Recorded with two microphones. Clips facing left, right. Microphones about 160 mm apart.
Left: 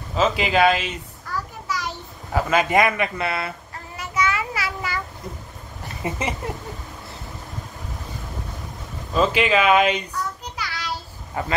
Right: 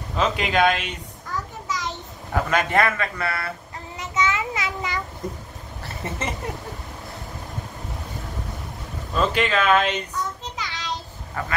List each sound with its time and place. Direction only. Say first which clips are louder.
0.1 s speech: left 2 dB; centre (ahead or behind)
1.3 s a sound: left 1 dB; 20° right (ahead or behind)
2.3 s a man's voice: left 2 dB; 5° left (ahead or behind); by 3.5 s 20° left (ahead or behind)
3.9 s child singing: even; 20° right (ahead or behind)
6.0 s a man's voice: left 3 dB; 10° left (ahead or behind)
9.1 s a man's voice: left 3 dB; 5° left (ahead or behind)
10.6 s a sound: left 3 dB; 20° right (ahead or behind)
11.4 s speech: left 3 dB; 20° left (ahead or behind)